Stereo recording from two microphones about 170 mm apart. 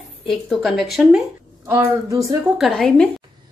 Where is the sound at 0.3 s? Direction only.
Centre (ahead or behind).